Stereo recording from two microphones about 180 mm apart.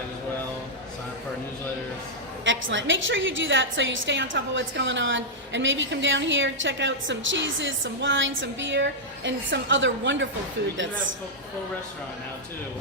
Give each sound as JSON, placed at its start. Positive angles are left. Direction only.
{"t": 2.4, "sound": "a woman's voice", "side_deg": -90}